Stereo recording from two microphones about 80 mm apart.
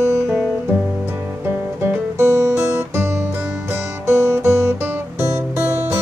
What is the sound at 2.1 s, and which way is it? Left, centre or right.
Guitar, right.